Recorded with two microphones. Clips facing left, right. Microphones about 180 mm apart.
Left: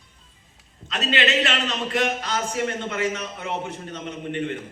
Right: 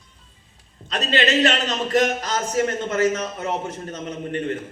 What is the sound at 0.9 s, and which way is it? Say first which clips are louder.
A man's voice: right 2 dB; 40° right (ahead or behind).